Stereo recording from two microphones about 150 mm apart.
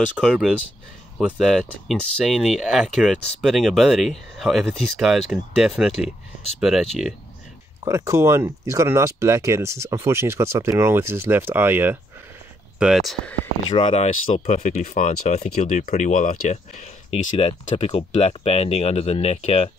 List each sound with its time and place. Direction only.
0.2 s speech: 5° right (ahead or behind)
7.8 s speech: 20° right (ahead or behind)
12.7 s speech: 5° right (ahead or behind)
13.7 s speech: 35° left (ahead or behind)